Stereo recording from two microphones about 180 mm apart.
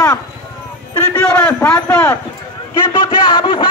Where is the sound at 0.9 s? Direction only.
10° left (ahead or behind).